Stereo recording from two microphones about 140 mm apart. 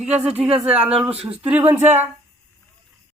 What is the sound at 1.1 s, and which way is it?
Speech, 45° right (ahead or behind).